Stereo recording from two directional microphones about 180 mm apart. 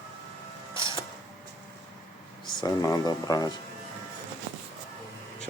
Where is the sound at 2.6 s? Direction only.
20° left (ahead or behind).